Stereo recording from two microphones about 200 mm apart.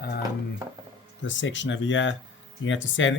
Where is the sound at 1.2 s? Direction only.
65° left (ahead or behind).